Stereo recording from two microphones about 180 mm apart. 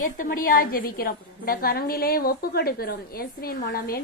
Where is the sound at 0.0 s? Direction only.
50° left (ahead or behind).